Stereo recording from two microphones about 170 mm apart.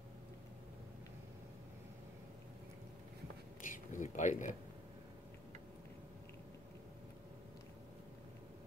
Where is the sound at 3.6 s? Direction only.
50° left (ahead or behind).